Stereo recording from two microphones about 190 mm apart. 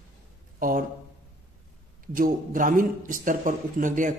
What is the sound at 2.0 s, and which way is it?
A man's voice, 45° right (ahead or behind).